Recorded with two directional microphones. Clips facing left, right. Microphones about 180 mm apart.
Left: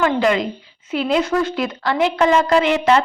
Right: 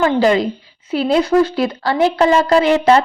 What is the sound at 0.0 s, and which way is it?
Speech, 35° right (ahead or behind).